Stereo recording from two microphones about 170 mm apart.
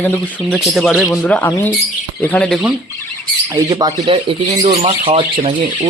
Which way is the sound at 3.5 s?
20° right (ahead or behind).